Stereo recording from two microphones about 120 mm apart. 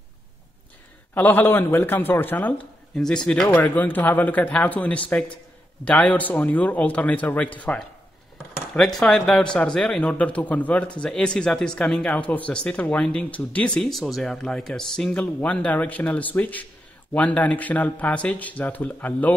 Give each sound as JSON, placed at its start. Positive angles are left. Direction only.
{"t": 1.1, "sound": "a man's voice", "side_deg": 15}